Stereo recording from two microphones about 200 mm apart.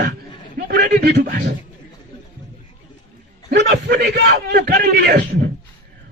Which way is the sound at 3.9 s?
55° right (ahead or behind).